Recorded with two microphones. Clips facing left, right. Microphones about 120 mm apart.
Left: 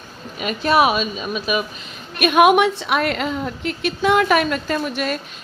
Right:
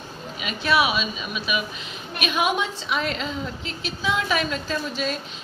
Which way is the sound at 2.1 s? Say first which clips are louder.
Left 10 dB; 55° left (ahead or behind).